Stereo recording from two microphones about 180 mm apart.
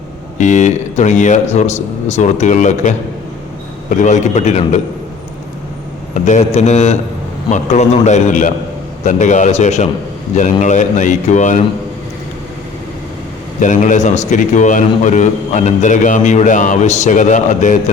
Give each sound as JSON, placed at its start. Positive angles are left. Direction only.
{"t": 0.3, "sound": "speech", "side_deg": 40}
{"t": 6.1, "sound": "a man's voice", "side_deg": 45}
{"t": 13.6, "sound": "a man's voice", "side_deg": 45}